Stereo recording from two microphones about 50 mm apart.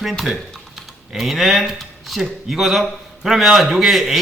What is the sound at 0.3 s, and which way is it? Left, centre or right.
Speech, centre.